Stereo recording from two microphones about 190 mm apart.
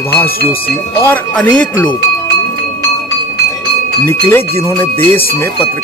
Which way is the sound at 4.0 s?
15° left (ahead or behind).